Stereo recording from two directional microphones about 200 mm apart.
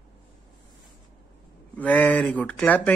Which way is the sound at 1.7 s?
10° left (ahead or behind).